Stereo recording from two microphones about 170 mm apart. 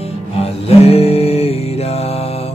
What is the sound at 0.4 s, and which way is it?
Music, 35° left (ahead or behind).